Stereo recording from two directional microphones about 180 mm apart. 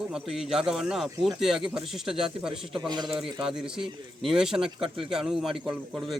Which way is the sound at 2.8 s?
20° right (ahead or behind).